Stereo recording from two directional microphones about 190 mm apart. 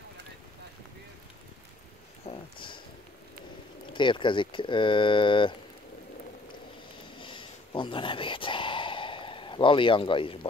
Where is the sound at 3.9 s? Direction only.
25° left (ahead or behind).